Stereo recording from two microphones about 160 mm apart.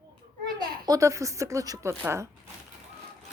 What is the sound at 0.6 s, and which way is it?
Speech, 20° right (ahead or behind).